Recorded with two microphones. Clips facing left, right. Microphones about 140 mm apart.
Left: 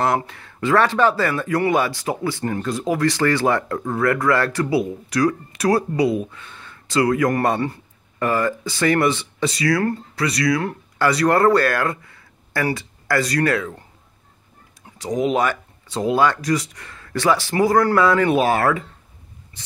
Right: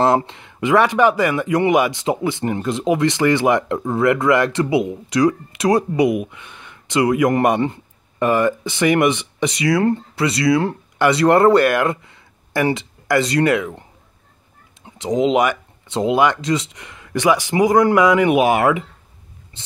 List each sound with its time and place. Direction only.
0.0 s speech: 25° right (ahead or behind)
15.0 s speech: 20° right (ahead or behind)
19.6 s a sound: 25° right (ahead or behind)